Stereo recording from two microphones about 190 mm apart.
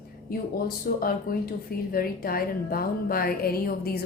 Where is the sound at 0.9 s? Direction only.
50° left (ahead or behind).